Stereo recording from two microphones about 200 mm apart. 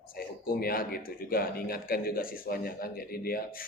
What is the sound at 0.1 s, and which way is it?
Speech, 45° left (ahead or behind).